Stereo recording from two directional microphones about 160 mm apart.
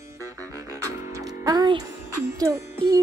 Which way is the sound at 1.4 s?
25° right (ahead or behind).